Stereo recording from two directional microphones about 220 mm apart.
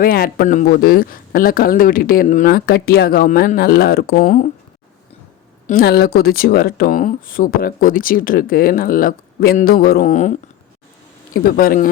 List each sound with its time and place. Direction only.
0.0 s speech: 40° left (ahead or behind)
5.6 s speech: 45° left (ahead or behind)
11.3 s speech: 40° left (ahead or behind)